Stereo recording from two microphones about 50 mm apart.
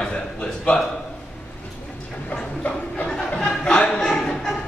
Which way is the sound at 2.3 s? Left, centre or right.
Left.